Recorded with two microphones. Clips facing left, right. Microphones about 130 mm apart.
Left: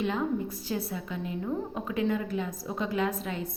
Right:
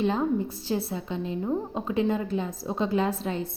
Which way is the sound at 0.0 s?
30° right (ahead or behind).